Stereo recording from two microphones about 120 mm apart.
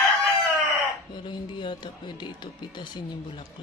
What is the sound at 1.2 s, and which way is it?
Speech, 40° left (ahead or behind).